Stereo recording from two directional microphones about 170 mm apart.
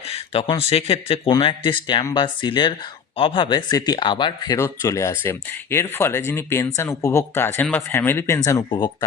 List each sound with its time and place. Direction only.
0.3 s speech: 30° left (ahead or behind)